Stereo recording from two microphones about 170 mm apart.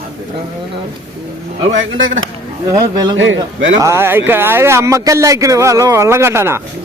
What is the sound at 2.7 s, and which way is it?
Speech, 25° right (ahead or behind).